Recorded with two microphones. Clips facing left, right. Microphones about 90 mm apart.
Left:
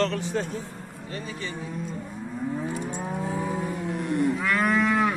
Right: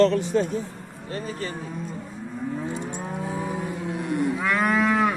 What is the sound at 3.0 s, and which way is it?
Livestock, 5° right (ahead or behind).